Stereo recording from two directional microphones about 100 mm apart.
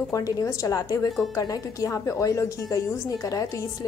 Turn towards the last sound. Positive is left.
turn(degrees=35)  # may be behind; listen again after turning